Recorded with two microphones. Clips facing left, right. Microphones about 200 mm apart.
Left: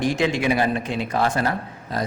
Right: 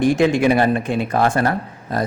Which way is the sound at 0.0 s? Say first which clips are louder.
Right 6 dB; 50° right (ahead or behind).